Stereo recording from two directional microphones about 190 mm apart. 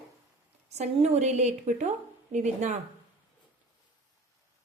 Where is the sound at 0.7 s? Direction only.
35° right (ahead or behind).